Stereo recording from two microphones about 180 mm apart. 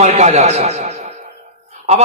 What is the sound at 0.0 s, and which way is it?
A man's voice, 40° right (ahead or behind).